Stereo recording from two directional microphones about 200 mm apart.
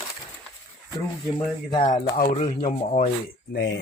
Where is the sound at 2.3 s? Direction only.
30° left (ahead or behind).